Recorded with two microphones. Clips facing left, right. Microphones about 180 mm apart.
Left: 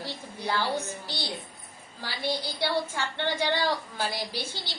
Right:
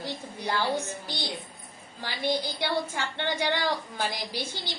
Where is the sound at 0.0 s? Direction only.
15° right (ahead or behind).